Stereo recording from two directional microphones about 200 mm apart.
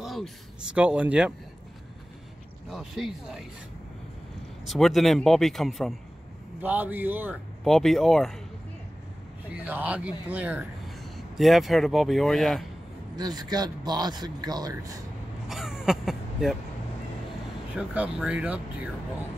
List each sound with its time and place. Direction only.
0.0 s a sound: centre (ahead or behind)
0.7 s speech: 5° right (ahead or behind)
2.7 s speech: centre (ahead or behind)
4.6 s speech: centre (ahead or behind)
7.6 s speech: centre (ahead or behind)
9.7 s a man's voice: 10° right (ahead or behind)
13.1 s speech: 20° right (ahead or behind)
15.4 s a sound: centre (ahead or behind)
17.7 s speech: 5° right (ahead or behind)